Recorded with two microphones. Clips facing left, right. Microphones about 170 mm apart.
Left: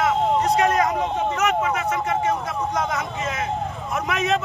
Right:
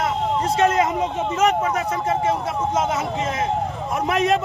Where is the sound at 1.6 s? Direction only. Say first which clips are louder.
Right 1 dB; 35° right (ahead or behind).